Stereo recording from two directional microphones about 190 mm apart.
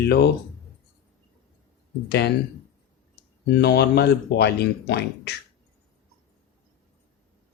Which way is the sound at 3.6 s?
60° left (ahead or behind).